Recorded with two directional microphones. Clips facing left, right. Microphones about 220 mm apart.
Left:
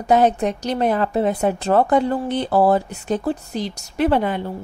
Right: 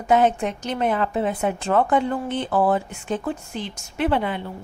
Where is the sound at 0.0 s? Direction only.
40° left (ahead or behind).